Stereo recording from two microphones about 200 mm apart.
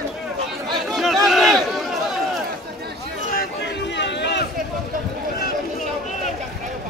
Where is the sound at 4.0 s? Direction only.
60° left (ahead or behind).